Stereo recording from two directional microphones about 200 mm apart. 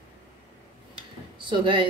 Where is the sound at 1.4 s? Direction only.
25° right (ahead or behind).